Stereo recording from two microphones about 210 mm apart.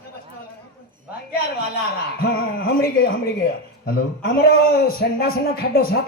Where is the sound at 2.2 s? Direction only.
45° left (ahead or behind).